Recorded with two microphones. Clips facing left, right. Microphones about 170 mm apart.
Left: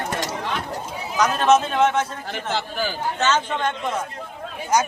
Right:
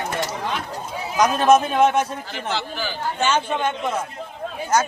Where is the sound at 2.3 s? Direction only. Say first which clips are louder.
Left 2 dB; 50° left (ahead or behind).